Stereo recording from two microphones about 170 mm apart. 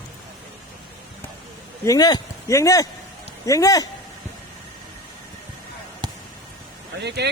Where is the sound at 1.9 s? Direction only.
25° left (ahead or behind).